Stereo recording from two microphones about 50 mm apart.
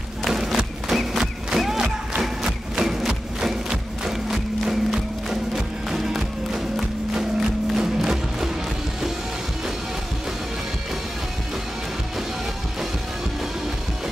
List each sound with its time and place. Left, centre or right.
0.2 s a sound: centre
1.6 s crowd: centre
4.0 s music: centre